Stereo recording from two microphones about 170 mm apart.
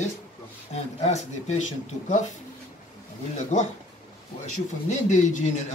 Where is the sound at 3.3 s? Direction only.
45° left (ahead or behind).